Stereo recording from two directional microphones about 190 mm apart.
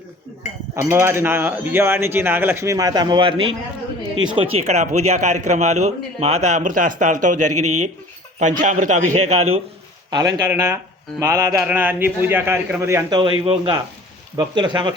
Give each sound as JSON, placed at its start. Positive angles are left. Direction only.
{"t": 0.8, "sound": "speech", "side_deg": -15}
{"t": 10.1, "sound": "speech", "side_deg": -20}